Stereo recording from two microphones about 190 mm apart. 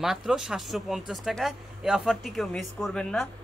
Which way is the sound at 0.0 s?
Centre (ahead or behind).